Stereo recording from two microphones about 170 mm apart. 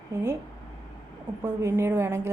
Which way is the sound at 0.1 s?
15° right (ahead or behind).